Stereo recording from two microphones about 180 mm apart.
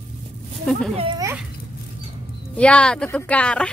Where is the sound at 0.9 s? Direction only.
30° right (ahead or behind).